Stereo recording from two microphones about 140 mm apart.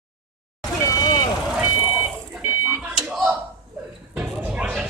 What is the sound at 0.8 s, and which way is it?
Vehicle, 25° left (ahead or behind).